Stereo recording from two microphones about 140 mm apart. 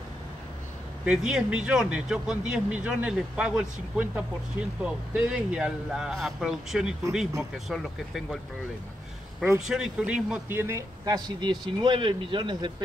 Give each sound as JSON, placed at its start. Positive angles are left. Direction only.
{"t": 1.0, "sound": "speech", "side_deg": -5}
{"t": 9.7, "sound": "a man's voice", "side_deg": -5}
{"t": 11.2, "sound": "speech", "side_deg": -30}